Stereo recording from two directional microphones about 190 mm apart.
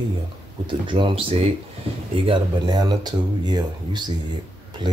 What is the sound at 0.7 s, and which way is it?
Speech, 25° right (ahead or behind).